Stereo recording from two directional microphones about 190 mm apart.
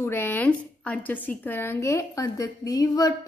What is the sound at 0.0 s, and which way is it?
A woman's voice, 10° left (ahead or behind).